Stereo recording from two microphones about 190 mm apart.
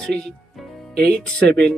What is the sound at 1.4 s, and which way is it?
Speech, 60° right (ahead or behind).